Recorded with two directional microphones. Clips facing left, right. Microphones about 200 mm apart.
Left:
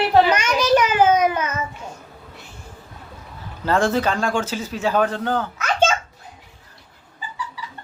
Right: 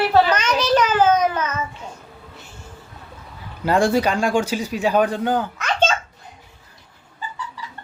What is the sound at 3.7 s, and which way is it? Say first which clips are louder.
A man's voice: right 2 dB; 15° right (ahead or behind).